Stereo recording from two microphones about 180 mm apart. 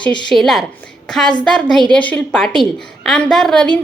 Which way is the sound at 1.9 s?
10° left (ahead or behind).